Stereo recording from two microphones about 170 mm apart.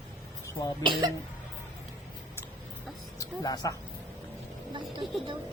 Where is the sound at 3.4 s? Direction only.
25° left (ahead or behind).